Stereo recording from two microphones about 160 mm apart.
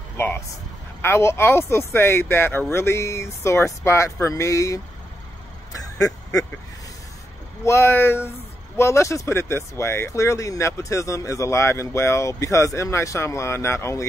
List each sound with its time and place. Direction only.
0.2 s speech: 15° left (ahead or behind)
5.8 s quack: 20° left (ahead or behind)
7.6 s speech: 15° left (ahead or behind)